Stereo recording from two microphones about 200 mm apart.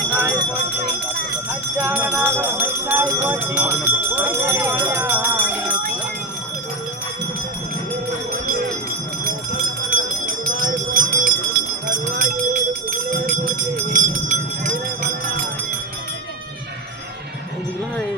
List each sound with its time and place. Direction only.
0.1 s jingle bell: 10° right (ahead or behind)
1.8 s music: 10° right (ahead or behind)
10.4 s jingle bell: 45° right (ahead or behind)
13.9 s a sound: 40° right (ahead or behind)